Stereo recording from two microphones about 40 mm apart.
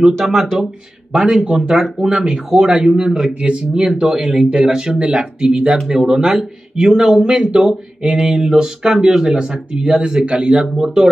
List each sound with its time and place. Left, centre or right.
0.0 s speech: centre
4.2 s speech: centre